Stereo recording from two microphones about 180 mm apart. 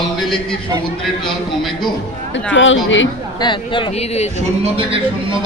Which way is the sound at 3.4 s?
25° left (ahead or behind).